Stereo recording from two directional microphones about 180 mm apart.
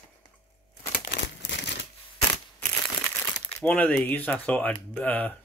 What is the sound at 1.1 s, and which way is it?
Crumpling, 70° left (ahead or behind).